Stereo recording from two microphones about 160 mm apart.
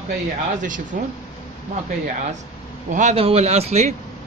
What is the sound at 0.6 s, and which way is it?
Speech, 55° right (ahead or behind).